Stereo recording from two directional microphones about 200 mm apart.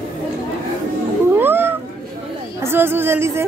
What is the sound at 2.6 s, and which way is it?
Speech, 10° right (ahead or behind).